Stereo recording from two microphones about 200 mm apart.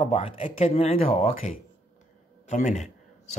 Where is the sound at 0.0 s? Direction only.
30° left (ahead or behind).